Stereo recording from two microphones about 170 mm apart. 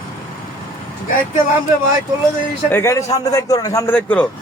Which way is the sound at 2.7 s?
15° left (ahead or behind).